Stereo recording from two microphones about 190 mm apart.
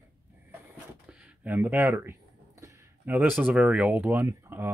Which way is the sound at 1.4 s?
10° right (ahead or behind).